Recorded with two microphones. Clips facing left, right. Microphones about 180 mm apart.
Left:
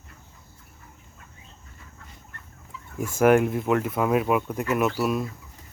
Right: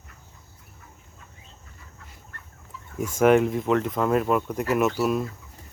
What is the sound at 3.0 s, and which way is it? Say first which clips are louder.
Speech: even; 5° left (ahead or behind).